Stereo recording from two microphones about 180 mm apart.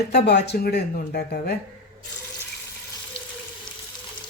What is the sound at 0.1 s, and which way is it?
Speech, 65° left (ahead or behind).